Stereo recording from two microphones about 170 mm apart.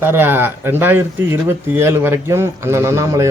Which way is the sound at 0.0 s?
10° right (ahead or behind).